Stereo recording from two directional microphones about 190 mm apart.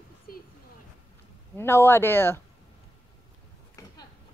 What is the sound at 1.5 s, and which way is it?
Speech, 10° left (ahead or behind).